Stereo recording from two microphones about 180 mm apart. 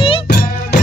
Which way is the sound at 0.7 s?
65° left (ahead or behind).